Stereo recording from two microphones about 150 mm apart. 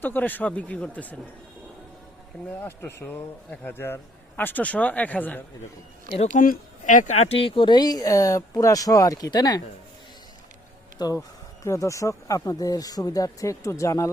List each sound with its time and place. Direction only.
0.0 s a man's voice: 10° left (ahead or behind)
2.6 s a man's voice: 15° left (ahead or behind)
6.1 s speech: 65° left (ahead or behind); by 9.6 s 25° left (ahead or behind)
10.9 s speech: 25° left (ahead or behind)